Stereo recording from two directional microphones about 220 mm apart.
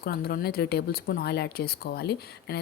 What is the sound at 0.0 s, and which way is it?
Speech, 45° left (ahead or behind).